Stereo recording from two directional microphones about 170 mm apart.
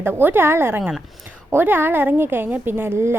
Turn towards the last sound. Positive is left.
turn(degrees=-15)  # may be behind; listen again after turning